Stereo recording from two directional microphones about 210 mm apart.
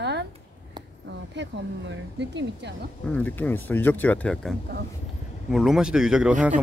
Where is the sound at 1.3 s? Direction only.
60° right (ahead or behind).